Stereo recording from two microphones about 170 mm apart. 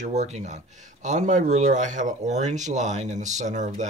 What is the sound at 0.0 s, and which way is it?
Speech, 40° right (ahead or behind).